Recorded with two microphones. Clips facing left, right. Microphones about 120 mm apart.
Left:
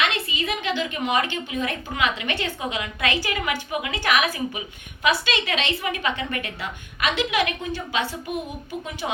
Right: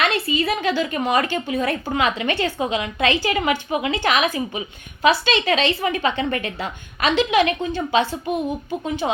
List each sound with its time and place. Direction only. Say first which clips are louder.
0.0 s a woman's voice: right 5 dB; 40° right (ahead or behind)
9.0 s a woman's voice: right 4 dB; 40° right (ahead or behind)